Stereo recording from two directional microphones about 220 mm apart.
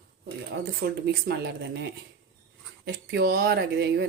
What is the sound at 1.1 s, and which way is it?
Speech, 45° right (ahead or behind).